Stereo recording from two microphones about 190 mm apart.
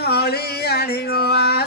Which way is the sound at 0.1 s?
55° left (ahead or behind).